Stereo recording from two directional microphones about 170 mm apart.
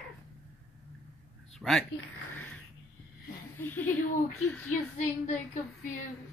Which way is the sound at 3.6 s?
10° left (ahead or behind).